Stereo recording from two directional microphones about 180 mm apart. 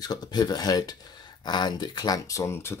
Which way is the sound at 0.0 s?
20° left (ahead or behind).